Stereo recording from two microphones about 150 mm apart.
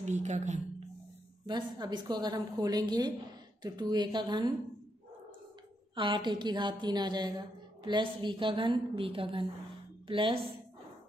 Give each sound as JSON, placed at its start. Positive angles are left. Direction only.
{"t": 0.0, "sound": "a woman's voice", "side_deg": -50}
{"t": 1.4, "sound": "a woman's voice", "side_deg": -30}
{"t": 5.9, "sound": "a woman's voice", "side_deg": -35}